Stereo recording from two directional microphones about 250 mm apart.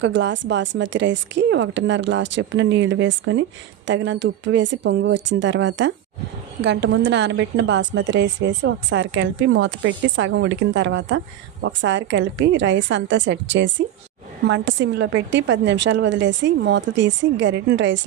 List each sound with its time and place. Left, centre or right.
0.0 s a woman's voice: right